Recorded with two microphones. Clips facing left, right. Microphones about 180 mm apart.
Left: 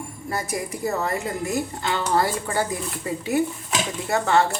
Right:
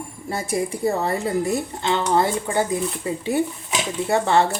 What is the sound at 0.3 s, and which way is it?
Speech, 25° right (ahead or behind).